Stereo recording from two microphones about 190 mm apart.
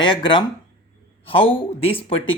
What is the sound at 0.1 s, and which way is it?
A man's voice, 25° left (ahead or behind).